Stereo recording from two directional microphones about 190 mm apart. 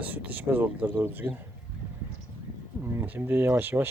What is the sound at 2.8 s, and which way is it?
Speech, 10° right (ahead or behind).